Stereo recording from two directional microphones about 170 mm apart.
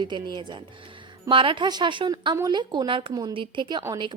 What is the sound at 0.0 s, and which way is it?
Speech, 25° right (ahead or behind).